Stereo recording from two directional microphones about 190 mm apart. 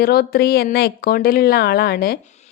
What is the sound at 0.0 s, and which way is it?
A woman's voice, 55° left (ahead or behind).